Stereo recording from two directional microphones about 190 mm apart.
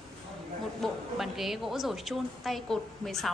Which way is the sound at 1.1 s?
Centre (ahead or behind).